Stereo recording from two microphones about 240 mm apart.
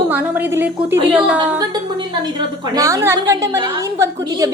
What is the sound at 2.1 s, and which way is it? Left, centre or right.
A woman's voice, centre.